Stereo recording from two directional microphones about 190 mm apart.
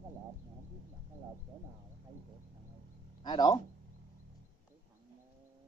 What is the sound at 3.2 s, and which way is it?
Speech, 20° left (ahead or behind).